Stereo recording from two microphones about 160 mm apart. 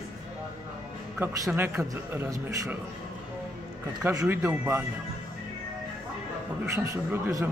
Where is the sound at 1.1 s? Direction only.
15° right (ahead or behind).